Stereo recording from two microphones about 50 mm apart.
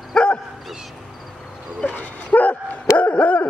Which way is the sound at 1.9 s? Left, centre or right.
Left.